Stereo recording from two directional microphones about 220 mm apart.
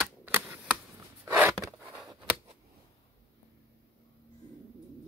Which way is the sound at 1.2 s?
10° right (ahead or behind).